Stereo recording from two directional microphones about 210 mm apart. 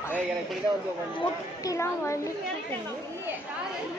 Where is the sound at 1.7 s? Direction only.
15° left (ahead or behind).